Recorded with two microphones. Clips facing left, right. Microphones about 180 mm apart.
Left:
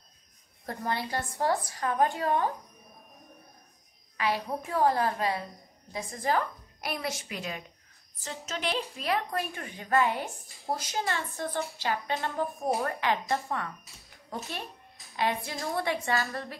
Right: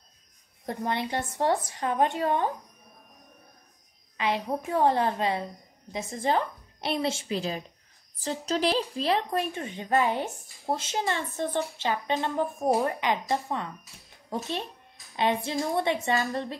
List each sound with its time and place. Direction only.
0.7 s a woman's voice: 20° right (ahead or behind)
4.2 s a woman's voice: 20° right (ahead or behind)
15.1 s a woman's voice: 25° right (ahead or behind)